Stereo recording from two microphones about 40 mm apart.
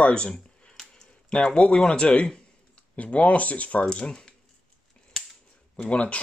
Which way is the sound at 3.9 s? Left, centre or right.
Left.